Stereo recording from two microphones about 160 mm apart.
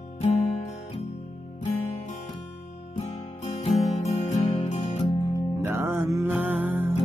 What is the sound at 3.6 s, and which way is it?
Music, 40° left (ahead or behind).